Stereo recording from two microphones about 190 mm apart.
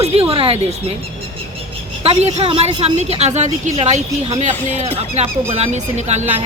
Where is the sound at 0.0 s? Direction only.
30° right (ahead or behind).